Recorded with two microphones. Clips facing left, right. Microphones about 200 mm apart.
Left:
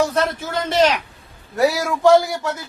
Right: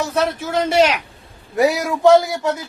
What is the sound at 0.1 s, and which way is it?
A man's voice, 10° right (ahead or behind).